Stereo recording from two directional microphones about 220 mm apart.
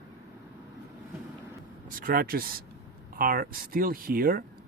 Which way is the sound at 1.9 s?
40° right (ahead or behind).